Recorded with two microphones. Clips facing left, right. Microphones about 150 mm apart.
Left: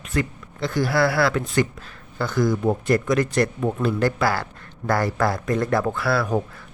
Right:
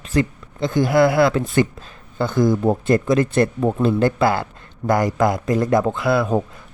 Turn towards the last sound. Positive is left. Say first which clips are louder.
# right 4 dB
turn(degrees=-20)  # may be behind; listen again after turning